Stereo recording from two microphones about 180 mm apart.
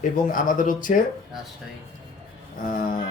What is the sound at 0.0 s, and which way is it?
Speech, 50° left (ahead or behind).